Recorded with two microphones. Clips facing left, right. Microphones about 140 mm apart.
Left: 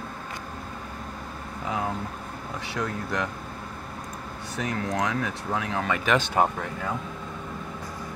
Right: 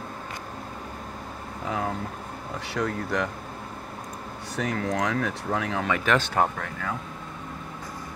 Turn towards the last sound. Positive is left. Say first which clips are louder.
# left 1 dB
turn(degrees=15)  # may be behind; listen again after turning